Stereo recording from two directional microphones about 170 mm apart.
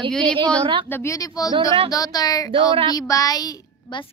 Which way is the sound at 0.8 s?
15° left (ahead or behind).